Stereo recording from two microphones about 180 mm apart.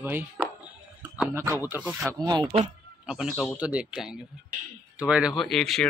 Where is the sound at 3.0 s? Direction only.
5° right (ahead or behind).